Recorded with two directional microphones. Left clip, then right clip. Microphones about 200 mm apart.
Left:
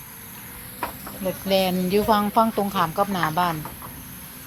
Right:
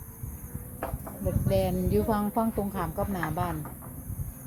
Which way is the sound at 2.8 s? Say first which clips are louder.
Left 13 dB; 30° left (ahead or behind).